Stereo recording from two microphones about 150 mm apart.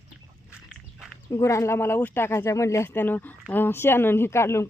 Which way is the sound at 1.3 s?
20° left (ahead or behind).